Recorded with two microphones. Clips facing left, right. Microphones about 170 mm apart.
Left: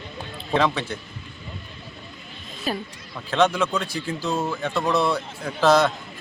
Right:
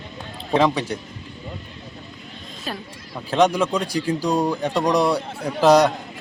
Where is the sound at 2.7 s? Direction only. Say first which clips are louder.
Left 4 dB; 5° left (ahead or behind).